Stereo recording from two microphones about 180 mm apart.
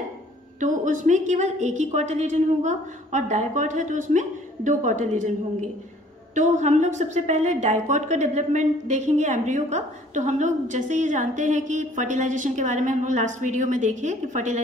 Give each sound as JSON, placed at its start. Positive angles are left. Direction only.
{"t": 0.6, "sound": "a woman's voice", "side_deg": -45}
{"t": 6.3, "sound": "a woman's voice", "side_deg": -40}